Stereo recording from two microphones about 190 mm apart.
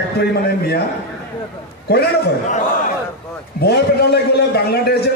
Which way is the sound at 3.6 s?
60° left (ahead or behind).